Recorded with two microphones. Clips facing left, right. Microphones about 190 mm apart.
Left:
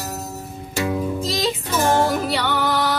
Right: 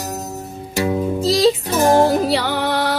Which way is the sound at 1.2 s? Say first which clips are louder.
Right 8 dB; 35° right (ahead or behind).